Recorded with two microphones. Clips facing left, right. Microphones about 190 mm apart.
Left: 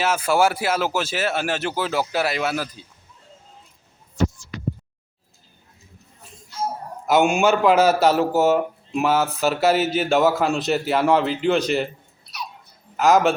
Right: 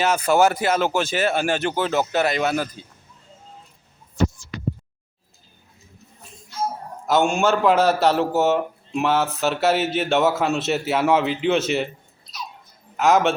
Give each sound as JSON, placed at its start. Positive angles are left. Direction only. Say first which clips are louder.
{"t": 0.0, "sound": "a man's voice", "louder": "right 2 dB", "side_deg": 5}
{"t": 7.1, "sound": "a man's voice", "louder": "left 2 dB", "side_deg": 5}
{"t": 12.2, "sound": "babbling", "louder": "left 1 dB", "side_deg": 65}
{"t": 13.0, "sound": "a man's voice", "louder": "left 1 dB", "side_deg": 0}